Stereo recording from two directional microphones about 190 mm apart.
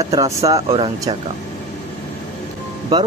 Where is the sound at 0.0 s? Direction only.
20° right (ahead or behind).